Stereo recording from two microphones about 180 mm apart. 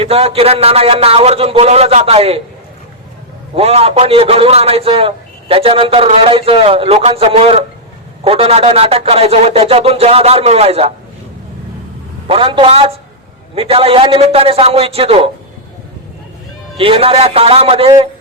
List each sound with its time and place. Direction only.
0.0 s a man's voice: 35° right (ahead or behind)
3.5 s a man's voice: 35° right (ahead or behind)
12.3 s a man's voice: 30° right (ahead or behind)
16.7 s a man's voice: 30° right (ahead or behind)